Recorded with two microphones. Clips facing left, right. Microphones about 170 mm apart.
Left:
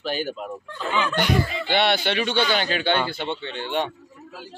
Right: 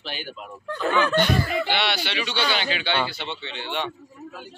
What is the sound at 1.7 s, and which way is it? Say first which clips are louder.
Speech: left 5 dB; 50° left (ahead or behind).